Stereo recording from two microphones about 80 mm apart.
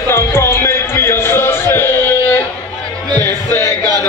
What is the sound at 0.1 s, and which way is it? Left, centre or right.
Music, left.